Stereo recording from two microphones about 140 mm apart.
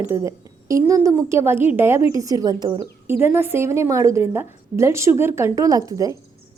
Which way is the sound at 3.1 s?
15° right (ahead or behind).